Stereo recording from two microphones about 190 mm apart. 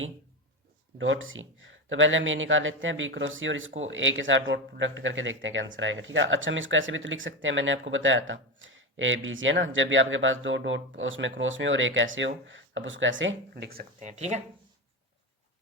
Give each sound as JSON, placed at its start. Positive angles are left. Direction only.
{"t": 0.9, "sound": "speech", "side_deg": -85}
{"t": 13.7, "sound": "speech", "side_deg": -50}
{"t": 14.1, "sound": "speech", "side_deg": -35}